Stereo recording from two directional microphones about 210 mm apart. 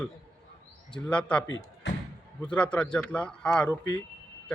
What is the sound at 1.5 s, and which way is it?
Speech, 65° left (ahead or behind).